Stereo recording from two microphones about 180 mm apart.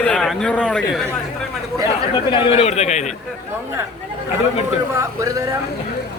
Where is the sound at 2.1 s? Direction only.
30° left (ahead or behind).